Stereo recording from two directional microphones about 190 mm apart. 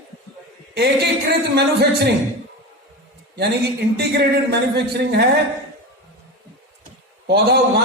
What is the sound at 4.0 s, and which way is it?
A woman's voice, 60° right (ahead or behind).